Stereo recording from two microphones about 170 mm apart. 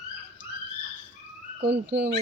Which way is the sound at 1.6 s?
90° right.